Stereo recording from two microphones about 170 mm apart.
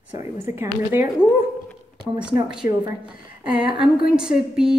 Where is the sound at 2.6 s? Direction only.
55° left (ahead or behind).